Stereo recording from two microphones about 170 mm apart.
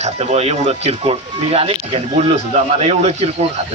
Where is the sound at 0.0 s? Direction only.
40° right (ahead or behind).